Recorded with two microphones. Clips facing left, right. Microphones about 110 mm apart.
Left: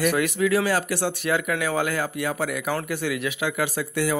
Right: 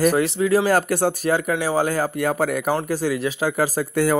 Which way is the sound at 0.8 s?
45° right (ahead or behind).